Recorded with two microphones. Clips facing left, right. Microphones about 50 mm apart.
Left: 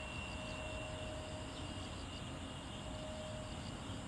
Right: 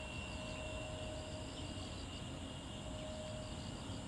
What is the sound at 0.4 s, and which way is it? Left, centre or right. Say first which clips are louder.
Vehicle: left 1 dB; centre.